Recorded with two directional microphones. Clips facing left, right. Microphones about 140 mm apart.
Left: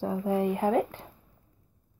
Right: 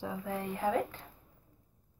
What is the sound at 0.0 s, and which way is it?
Speech, 45° left (ahead or behind).